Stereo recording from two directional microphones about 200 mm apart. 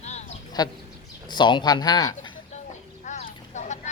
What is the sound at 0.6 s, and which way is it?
Speech, 20° left (ahead or behind).